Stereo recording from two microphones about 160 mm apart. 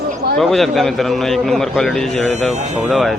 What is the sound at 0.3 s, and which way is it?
A man's voice, centre (ahead or behind).